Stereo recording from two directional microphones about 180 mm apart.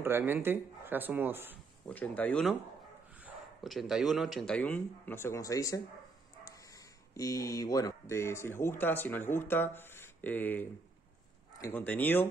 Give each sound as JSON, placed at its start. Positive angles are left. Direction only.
{"t": 0.0, "sound": "speech", "side_deg": -10}
{"t": 1.9, "sound": "speech", "side_deg": 10}